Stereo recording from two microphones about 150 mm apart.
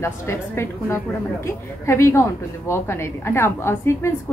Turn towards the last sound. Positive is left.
turn(degrees=15)  # may be behind; listen again after turning